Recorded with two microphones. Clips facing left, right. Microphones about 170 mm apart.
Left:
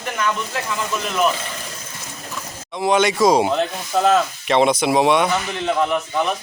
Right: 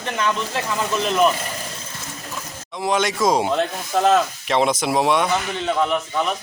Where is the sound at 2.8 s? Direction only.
Centre (ahead or behind).